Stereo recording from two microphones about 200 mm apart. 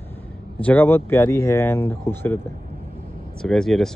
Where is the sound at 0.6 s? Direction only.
10° left (ahead or behind).